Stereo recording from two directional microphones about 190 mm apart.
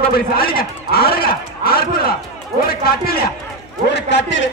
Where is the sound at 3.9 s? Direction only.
70° left (ahead or behind).